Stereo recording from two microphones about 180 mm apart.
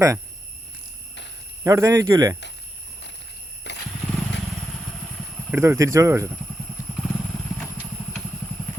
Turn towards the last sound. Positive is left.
turn(degrees=10)  # may be behind; listen again after turning